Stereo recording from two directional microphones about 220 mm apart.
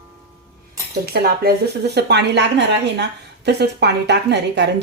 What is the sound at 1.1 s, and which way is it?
Speech, 45° right (ahead or behind).